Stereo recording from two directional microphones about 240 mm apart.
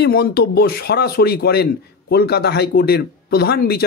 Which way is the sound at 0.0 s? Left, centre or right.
Left.